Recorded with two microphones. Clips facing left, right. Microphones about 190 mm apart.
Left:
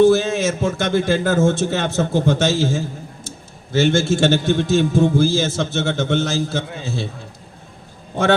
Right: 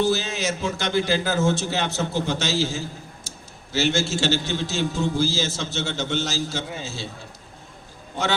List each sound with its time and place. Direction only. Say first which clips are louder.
0.0 s a man's voice: left 9 dB; 55° left (ahead or behind)